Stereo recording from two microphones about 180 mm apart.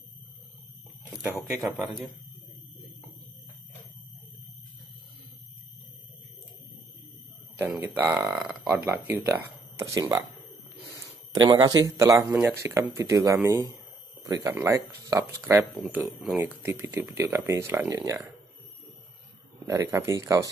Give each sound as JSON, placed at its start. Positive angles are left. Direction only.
{"t": 1.6, "sound": "speech", "side_deg": 0}
{"t": 7.5, "sound": "speech", "side_deg": -10}
{"t": 11.4, "sound": "speech", "side_deg": -20}
{"t": 19.6, "sound": "speech", "side_deg": -20}